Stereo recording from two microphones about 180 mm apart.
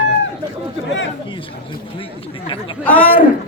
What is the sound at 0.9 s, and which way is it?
Chatter, 90° left.